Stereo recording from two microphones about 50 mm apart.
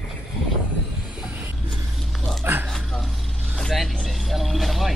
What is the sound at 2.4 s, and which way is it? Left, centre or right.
Dog, right.